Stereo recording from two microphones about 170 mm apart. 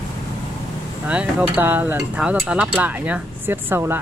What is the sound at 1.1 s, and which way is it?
Cutlery, 5° right (ahead or behind).